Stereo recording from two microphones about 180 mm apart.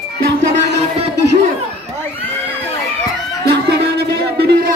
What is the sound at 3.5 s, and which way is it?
Music, 65° right (ahead or behind).